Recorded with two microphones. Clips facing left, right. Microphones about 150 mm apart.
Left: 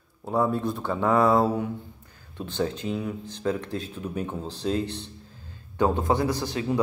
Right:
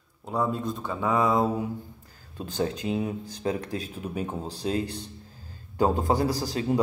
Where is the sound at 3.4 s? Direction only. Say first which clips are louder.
Left 1 dB; 35° right (ahead or behind).